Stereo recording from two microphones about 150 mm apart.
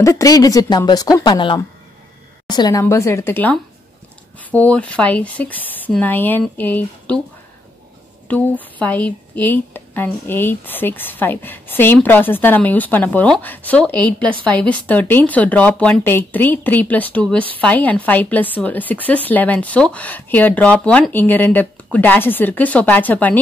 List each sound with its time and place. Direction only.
0.0 s a woman's voice: 20° left (ahead or behind)
8.3 s a woman's voice: 10° left (ahead or behind)